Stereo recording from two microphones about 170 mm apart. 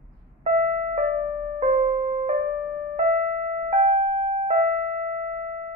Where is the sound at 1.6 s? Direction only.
40° right (ahead or behind).